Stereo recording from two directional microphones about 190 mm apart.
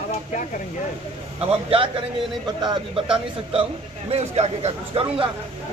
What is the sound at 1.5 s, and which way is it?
A man's voice, 30° right (ahead or behind).